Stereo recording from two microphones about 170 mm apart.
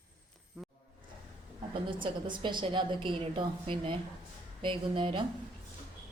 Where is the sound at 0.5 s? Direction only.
Centre (ahead or behind).